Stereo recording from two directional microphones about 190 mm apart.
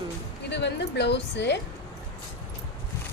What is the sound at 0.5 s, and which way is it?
A woman's voice, 65° left (ahead or behind).